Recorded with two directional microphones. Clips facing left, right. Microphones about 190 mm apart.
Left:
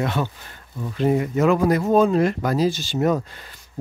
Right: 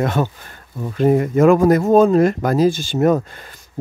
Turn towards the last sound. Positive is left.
turn(degrees=-50)  # may be behind; listen again after turning